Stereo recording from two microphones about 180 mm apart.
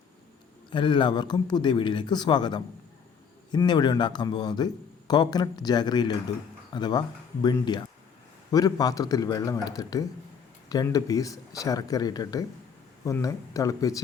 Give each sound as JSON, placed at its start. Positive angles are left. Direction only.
{"t": 0.7, "sound": "speech", "side_deg": 25}